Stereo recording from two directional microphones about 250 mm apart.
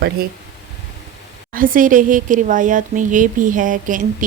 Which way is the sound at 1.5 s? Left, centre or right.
Right.